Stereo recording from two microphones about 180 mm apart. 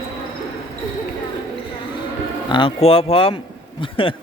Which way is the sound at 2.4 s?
30° left (ahead or behind).